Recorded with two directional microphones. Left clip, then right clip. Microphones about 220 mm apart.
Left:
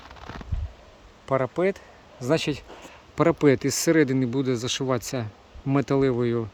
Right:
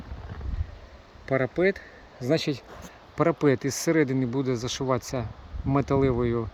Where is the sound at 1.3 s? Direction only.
50° left (ahead or behind).